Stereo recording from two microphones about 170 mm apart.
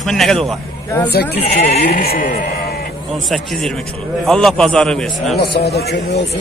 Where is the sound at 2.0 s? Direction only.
60° left (ahead or behind).